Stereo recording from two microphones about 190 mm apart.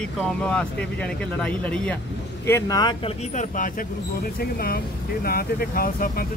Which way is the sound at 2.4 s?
15° left (ahead or behind).